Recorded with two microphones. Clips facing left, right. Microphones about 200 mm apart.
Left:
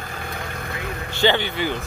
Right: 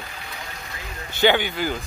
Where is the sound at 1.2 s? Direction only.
10° right (ahead or behind).